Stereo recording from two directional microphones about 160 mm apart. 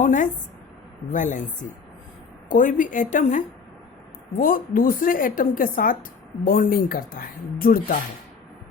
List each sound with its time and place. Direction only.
0.0 s a woman's voice: 55° left (ahead or behind)
2.5 s a woman's voice: 55° left (ahead or behind)